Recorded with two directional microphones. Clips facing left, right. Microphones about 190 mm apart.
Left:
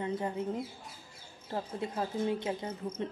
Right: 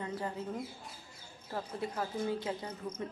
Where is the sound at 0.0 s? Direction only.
20° left (ahead or behind).